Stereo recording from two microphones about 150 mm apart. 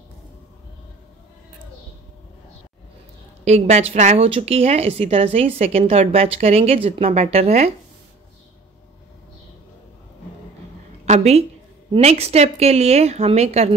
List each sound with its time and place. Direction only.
3.4 s speech: 45° right (ahead or behind)
11.1 s a woman's voice: 45° right (ahead or behind)